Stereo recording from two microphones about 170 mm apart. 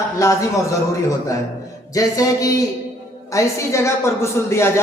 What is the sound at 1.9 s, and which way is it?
A man's voice, 20° left (ahead or behind).